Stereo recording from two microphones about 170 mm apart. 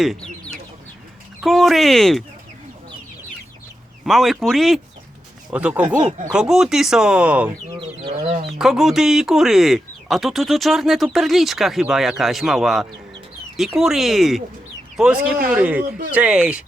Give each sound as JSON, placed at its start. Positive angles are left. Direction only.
{"t": 0.0, "sound": "speech", "side_deg": 0}
{"t": 4.0, "sound": "speech", "side_deg": 0}
{"t": 8.1, "sound": "speech", "side_deg": -35}
{"t": 8.5, "sound": "speech", "side_deg": 0}